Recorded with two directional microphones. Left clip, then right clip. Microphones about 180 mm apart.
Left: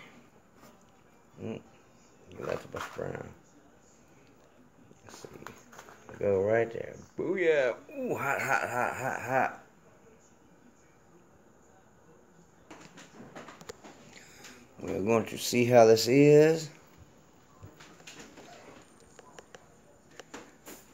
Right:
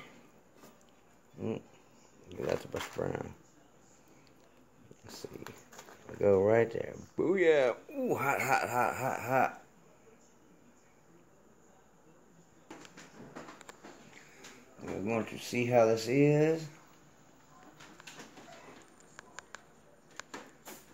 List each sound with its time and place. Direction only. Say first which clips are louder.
2.3 s wild animals: right 2 dB; 40° right (ahead or behind)
2.7 s a sound: right 1 dB; 30° right (ahead or behind)
5.4 s speech: left 2 dB; 25° right (ahead or behind)
15.0 s speech: left 7 dB; 40° left (ahead or behind)